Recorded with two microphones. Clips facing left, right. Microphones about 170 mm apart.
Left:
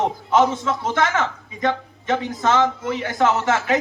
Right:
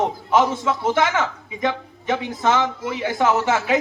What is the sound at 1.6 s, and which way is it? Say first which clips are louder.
A man's voice: left 1 dB; 15° right (ahead or behind).